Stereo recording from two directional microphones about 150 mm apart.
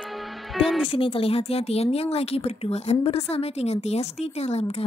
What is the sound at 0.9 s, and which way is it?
Speech, 35° left (ahead or behind).